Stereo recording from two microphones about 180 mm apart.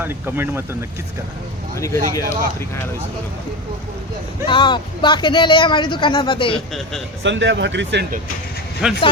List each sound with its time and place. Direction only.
0.0 s speech: 10° right (ahead or behind)
1.8 s speech: 20° left (ahead or behind)
4.4 s speech: 25° left (ahead or behind)
7.2 s speech: 90° right
8.8 s speech: 5° right (ahead or behind)